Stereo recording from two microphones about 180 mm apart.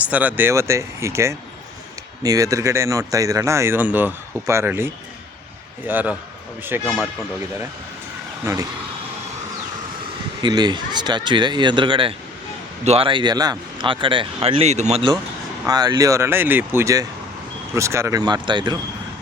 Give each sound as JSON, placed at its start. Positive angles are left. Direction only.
{"t": 0.0, "sound": "speech", "side_deg": -10}
{"t": 8.5, "sound": "speech", "side_deg": -15}
{"t": 10.4, "sound": "speech", "side_deg": -25}
{"t": 15.6, "sound": "speech", "side_deg": -20}